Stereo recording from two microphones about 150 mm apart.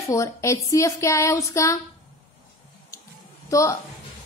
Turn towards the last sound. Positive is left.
turn(degrees=20)  # may be behind; listen again after turning